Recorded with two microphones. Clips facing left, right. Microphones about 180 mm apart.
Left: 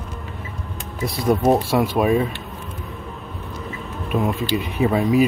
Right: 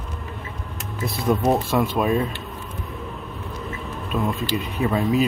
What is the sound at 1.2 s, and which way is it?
Speech, 15° left (ahead or behind).